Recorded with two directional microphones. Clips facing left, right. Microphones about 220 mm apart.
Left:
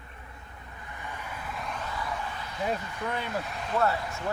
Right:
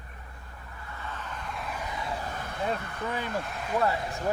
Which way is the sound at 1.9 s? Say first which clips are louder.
Even; 20° right (ahead or behind).